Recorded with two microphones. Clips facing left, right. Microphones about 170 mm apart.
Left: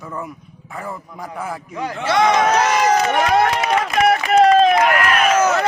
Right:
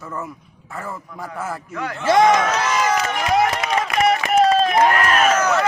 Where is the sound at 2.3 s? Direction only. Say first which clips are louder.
Left 4 dB; 40° left (ahead or behind).